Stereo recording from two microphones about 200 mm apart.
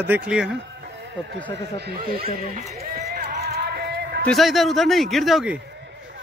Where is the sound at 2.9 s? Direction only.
50° right (ahead or behind).